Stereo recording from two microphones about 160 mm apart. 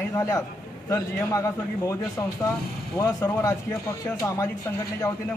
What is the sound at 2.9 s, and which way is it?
Speech, 20° left (ahead or behind).